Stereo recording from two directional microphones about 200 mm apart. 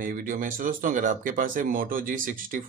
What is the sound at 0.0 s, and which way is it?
Speech, 45° right (ahead or behind).